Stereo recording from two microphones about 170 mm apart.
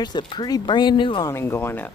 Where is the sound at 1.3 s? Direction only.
15° left (ahead or behind).